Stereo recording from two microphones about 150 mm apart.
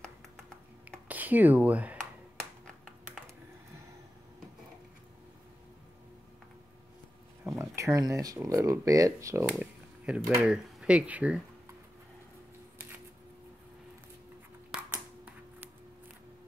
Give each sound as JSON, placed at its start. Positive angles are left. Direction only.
{"t": 1.0, "sound": "speech", "side_deg": -10}
{"t": 7.4, "sound": "speech", "side_deg": -20}
{"t": 9.6, "sound": "a sound", "side_deg": -10}
{"t": 10.4, "sound": "speech", "side_deg": -5}